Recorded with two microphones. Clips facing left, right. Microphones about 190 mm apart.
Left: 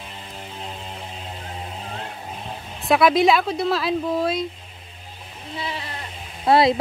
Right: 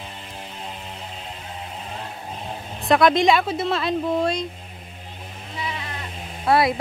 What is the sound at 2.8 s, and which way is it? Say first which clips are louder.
Speech: even; 5° left (ahead or behind).